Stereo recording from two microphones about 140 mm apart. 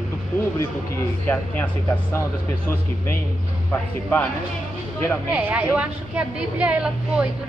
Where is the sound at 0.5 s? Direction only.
15° left (ahead or behind).